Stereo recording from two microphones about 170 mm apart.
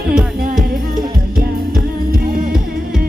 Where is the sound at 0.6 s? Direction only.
60° right (ahead or behind).